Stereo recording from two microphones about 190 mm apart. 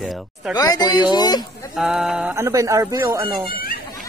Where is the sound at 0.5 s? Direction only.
20° left (ahead or behind).